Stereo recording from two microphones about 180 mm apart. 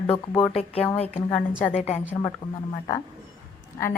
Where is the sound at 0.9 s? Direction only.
35° left (ahead or behind).